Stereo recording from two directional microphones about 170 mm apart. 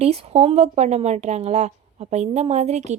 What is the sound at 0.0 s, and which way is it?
A woman's voice, 35° right (ahead or behind).